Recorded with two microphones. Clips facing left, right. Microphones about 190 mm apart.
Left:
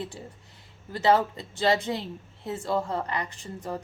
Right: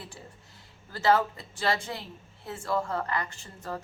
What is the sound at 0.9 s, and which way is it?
A woman's voice, 20° left (ahead or behind).